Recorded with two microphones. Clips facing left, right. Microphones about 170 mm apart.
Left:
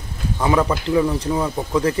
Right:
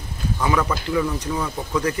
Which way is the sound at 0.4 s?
25° left (ahead or behind).